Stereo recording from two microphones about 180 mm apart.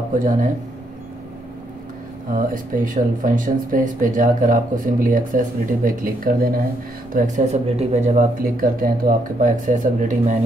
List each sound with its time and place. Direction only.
0.1 s speech: 45° right (ahead or behind)
2.3 s speech: 50° right (ahead or behind)
7.2 s speech: 40° right (ahead or behind)